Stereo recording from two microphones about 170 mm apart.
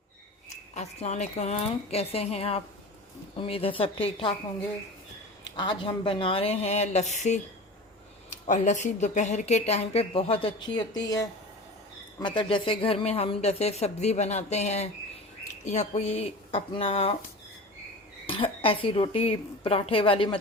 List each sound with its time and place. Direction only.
0.5 s speech: 40° left (ahead or behind)
5.5 s speech: 30° left (ahead or behind)
11.0 s speech: 20° left (ahead or behind)
18.3 s speech: 30° left (ahead or behind)